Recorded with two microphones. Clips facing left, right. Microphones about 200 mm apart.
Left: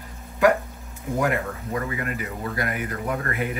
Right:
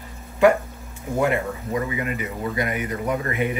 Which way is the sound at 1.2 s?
5° right (ahead or behind).